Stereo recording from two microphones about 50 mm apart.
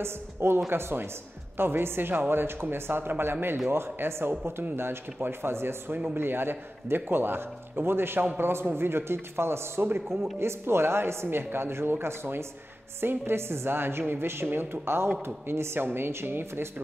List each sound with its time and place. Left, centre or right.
0.0 s a man's voice: right
15.8 s a man's voice: right